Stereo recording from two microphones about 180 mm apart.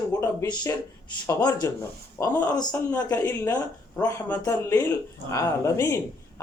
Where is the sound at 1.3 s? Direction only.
20° left (ahead or behind).